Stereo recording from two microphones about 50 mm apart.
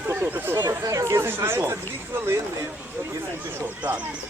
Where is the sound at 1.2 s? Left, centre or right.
Right.